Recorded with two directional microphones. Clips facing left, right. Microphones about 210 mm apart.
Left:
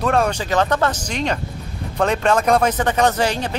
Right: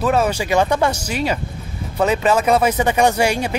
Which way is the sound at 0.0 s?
5° right (ahead or behind).